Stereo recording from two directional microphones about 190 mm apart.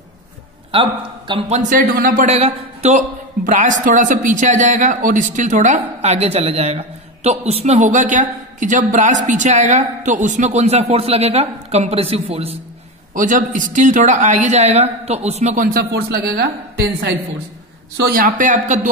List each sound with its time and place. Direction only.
0.7 s a man's voice: 25° right (ahead or behind)
1.7 s a man's voice: 50° right (ahead or behind); by 12.5 s 30° right (ahead or behind)
13.1 s a woman's voice: 45° right (ahead or behind)